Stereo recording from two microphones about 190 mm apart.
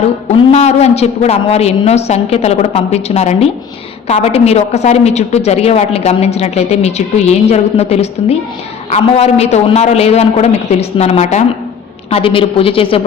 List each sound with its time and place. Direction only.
0.0 s a woman's voice: 35° left (ahead or behind)